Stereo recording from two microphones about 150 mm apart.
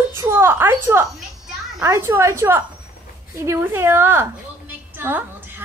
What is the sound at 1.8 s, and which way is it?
A woman's voice, 20° right (ahead or behind).